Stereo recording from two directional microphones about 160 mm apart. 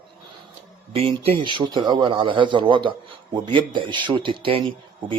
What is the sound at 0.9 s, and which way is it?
A man's voice, 40° right (ahead or behind).